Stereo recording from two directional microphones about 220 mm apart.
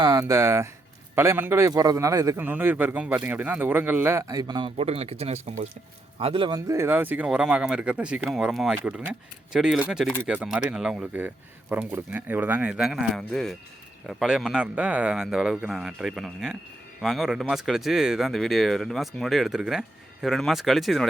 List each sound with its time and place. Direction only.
0.0 s speech: 15° right (ahead or behind); by 21.1 s centre (ahead or behind)